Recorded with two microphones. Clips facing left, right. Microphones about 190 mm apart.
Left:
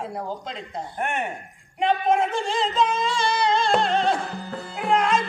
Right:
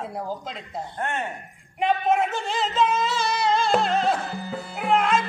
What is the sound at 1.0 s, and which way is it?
Speech, 15° left (ahead or behind).